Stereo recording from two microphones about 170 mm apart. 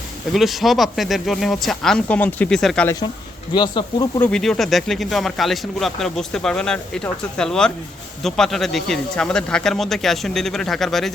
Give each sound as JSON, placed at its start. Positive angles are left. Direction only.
{"t": 0.3, "sound": "speech", "side_deg": 0}
{"t": 2.8, "sound": "speech", "side_deg": 20}
{"t": 4.2, "sound": "speech", "side_deg": 5}